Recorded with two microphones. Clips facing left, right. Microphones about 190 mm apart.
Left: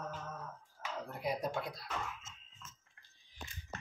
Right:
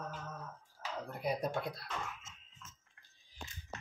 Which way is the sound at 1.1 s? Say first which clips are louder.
Right 1 dB; 60° right (ahead or behind).